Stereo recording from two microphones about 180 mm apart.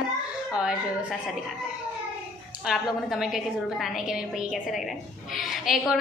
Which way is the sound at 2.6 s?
5° right (ahead or behind).